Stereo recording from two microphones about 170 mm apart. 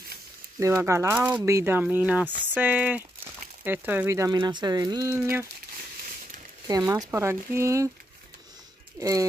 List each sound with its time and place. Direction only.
0.6 s speech: 15° right (ahead or behind)
6.7 s speech: 20° right (ahead or behind)
9.0 s speech: 20° right (ahead or behind)